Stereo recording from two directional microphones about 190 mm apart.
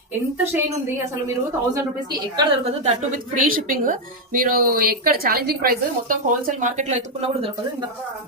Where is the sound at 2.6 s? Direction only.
35° right (ahead or behind).